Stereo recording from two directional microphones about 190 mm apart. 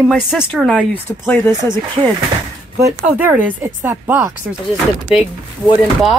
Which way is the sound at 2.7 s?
10° right (ahead or behind).